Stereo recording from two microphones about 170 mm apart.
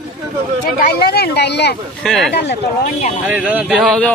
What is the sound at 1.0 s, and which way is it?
Speech, 70° left (ahead or behind).